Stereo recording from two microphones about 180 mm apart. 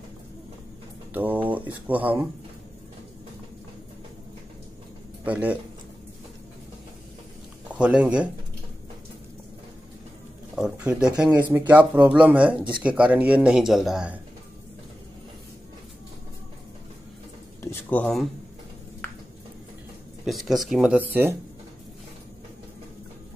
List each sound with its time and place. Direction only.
1.1 s speech: 10° right (ahead or behind)
5.2 s speech: 10° right (ahead or behind)
7.7 s speech: 5° right (ahead or behind)
10.5 s speech: 5° right (ahead or behind)
17.6 s speech: 10° left (ahead or behind)
20.2 s speech: centre (ahead or behind)